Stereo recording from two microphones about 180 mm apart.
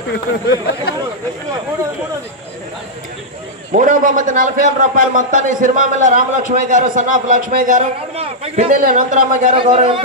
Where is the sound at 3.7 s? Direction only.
45° right (ahead or behind).